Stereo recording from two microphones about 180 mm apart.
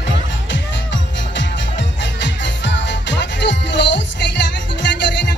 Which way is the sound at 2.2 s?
80° left.